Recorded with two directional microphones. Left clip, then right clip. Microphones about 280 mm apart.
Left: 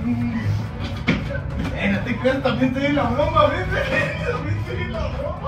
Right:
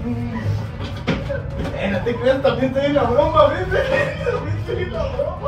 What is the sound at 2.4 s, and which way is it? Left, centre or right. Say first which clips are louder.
Speech: right 3 dB; centre.